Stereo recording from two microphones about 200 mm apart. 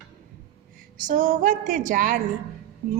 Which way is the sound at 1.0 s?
40° right (ahead or behind).